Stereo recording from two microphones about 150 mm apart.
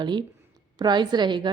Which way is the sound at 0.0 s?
30° right (ahead or behind).